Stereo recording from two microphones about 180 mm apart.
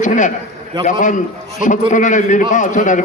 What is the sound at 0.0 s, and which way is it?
A man's voice, 45° left (ahead or behind).